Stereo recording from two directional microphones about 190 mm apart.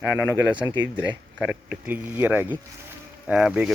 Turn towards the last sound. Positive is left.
turn(degrees=-5)  # may be behind; listen again after turning